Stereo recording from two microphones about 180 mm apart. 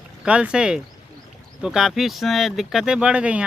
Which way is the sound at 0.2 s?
5° right (ahead or behind).